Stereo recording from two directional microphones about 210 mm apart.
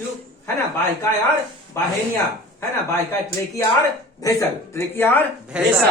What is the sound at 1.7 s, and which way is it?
Speech, 15° left (ahead or behind).